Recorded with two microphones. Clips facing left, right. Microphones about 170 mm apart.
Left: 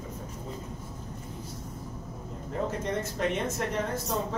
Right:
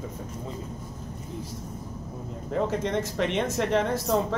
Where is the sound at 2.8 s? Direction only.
90° right.